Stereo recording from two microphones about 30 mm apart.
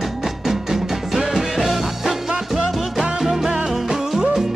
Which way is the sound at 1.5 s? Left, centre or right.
Centre.